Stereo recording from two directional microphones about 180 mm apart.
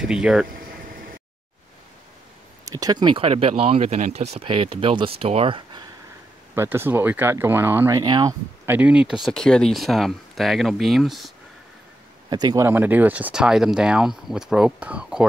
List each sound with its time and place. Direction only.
0.0 s speech: 5° right (ahead or behind)
2.6 s speech: 20° right (ahead or behind)
6.5 s speech: 15° right (ahead or behind)
8.0 s speech: 25° right (ahead or behind)
8.6 s speech: 10° right (ahead or behind)
12.3 s speech: 20° right (ahead or behind); by 15.2 s 5° right (ahead or behind)